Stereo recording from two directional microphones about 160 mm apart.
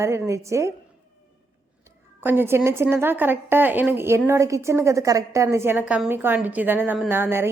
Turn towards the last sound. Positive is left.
turn(degrees=-15)  # may be behind; listen again after turning